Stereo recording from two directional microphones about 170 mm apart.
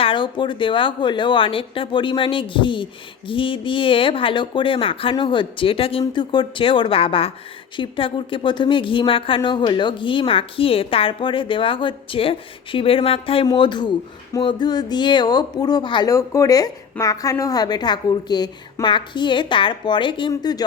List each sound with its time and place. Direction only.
0.0 s speech: 30° left (ahead or behind)